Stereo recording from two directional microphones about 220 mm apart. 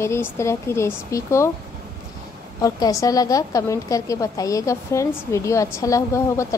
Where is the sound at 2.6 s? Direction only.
15° left (ahead or behind).